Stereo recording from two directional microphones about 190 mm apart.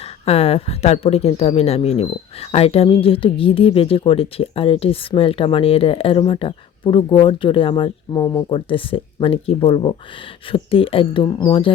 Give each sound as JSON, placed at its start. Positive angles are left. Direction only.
{"t": 0.3, "sound": "speech", "side_deg": 30}